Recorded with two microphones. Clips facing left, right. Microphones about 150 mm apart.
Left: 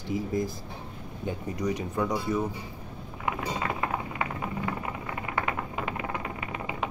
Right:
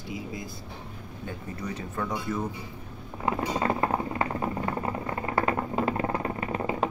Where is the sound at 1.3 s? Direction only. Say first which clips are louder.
Left 6 dB; 15° left (ahead or behind).